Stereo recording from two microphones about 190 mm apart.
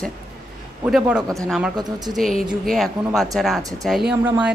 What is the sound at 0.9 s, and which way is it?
Speech, 5° right (ahead or behind).